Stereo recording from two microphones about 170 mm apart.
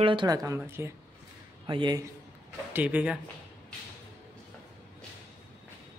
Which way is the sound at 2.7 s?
10° right (ahead or behind).